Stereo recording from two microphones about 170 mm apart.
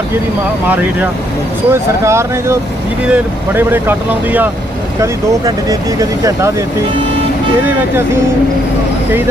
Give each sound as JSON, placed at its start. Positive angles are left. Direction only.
{"t": 1.7, "sound": "speech", "side_deg": -15}
{"t": 5.5, "sound": "speech", "side_deg": -20}